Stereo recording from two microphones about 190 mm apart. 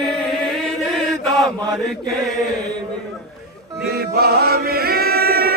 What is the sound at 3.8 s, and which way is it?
Choir, 55° right (ahead or behind).